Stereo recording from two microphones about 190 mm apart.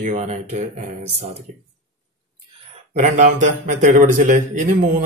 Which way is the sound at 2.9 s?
40° right (ahead or behind).